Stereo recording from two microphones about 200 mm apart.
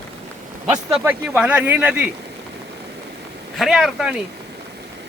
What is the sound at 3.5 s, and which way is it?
Speech, centre (ahead or behind).